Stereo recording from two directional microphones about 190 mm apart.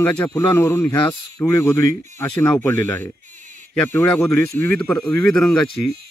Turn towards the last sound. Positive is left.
turn(degrees=5)  # may be behind; listen again after turning